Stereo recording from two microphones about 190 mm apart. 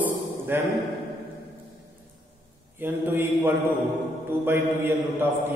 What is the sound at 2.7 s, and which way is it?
A man's voice, 10° right (ahead or behind).